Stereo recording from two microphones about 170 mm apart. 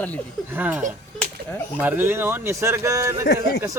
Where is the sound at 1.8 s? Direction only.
10° right (ahead or behind).